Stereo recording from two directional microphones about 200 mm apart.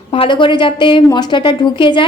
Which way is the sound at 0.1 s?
25° left (ahead or behind).